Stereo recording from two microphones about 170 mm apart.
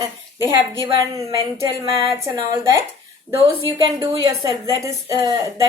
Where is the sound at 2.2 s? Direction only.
20° right (ahead or behind).